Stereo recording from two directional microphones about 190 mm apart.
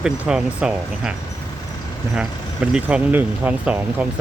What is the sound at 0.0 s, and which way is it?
Speech, 5° right (ahead or behind).